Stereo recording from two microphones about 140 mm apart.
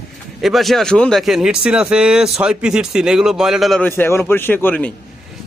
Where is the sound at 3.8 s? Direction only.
15° left (ahead or behind).